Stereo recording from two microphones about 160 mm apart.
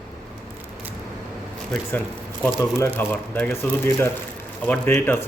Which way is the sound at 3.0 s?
10° left (ahead or behind).